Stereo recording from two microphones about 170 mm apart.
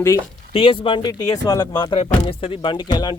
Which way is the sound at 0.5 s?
30° left (ahead or behind).